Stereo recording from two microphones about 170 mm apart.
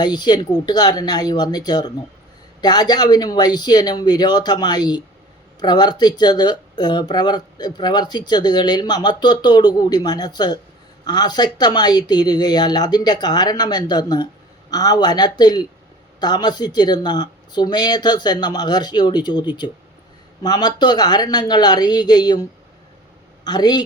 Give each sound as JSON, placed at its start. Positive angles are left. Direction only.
{"t": 0.0, "sound": "a man's voice", "side_deg": 25}